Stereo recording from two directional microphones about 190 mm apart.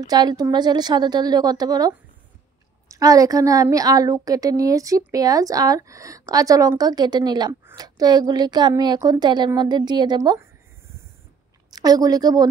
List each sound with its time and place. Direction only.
0.0 s a woman's voice: 20° right (ahead or behind)
11.7 s a woman's voice: 20° right (ahead or behind)